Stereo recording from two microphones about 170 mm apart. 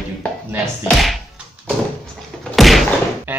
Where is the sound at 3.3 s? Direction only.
10° right (ahead or behind).